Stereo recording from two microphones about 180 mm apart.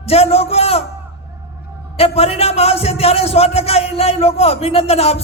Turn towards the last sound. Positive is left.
turn(degrees=35)  # may be behind; listen again after turning